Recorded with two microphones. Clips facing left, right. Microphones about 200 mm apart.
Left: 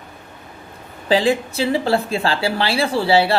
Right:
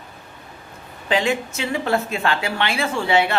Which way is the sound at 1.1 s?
35° left (ahead or behind).